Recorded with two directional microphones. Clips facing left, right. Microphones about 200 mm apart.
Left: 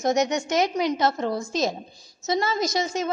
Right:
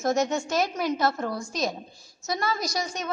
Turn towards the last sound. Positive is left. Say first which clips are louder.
# left 6 dB
turn(degrees=25)  # may be behind; listen again after turning